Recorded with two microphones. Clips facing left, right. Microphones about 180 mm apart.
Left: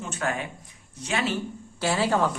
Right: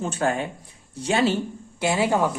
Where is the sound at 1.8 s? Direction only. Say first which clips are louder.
Right 2 dB; 15° right (ahead or behind).